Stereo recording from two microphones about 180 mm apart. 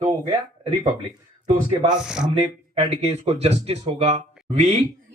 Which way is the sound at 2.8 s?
35° right (ahead or behind).